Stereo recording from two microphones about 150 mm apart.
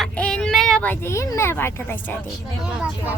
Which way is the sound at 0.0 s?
5° left (ahead or behind).